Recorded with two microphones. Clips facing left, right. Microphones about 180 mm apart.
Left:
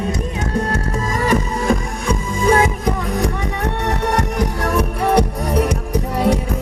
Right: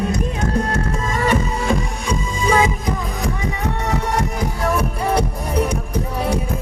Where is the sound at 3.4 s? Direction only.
70° left (ahead or behind).